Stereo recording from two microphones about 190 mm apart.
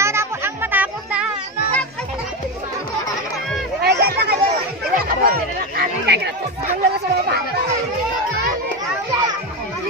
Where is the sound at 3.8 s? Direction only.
55° right (ahead or behind).